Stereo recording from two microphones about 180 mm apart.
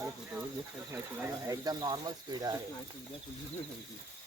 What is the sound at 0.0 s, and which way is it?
Bird, 10° right (ahead or behind).